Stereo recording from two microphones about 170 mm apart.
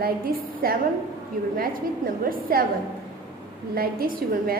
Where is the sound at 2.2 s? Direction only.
60° right (ahead or behind).